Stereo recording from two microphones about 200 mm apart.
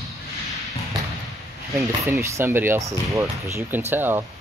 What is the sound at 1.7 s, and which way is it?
Speech, 15° right (ahead or behind).